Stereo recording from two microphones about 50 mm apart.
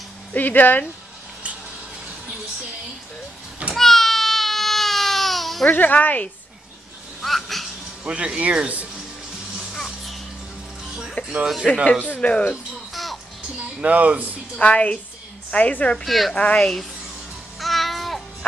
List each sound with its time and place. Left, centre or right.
0.3 s speech: left
3.7 s baby cry: centre
5.7 s speech: left
7.2 s a sound: centre
8.0 s speech: right
9.8 s music: centre
11.4 s speech: centre
12.0 s speech: left
12.9 s music: centre
13.7 s speech: right
14.6 s speech: left
16.1 s a woman's voice: centre
16.3 s speech: left
17.6 s babbling: centre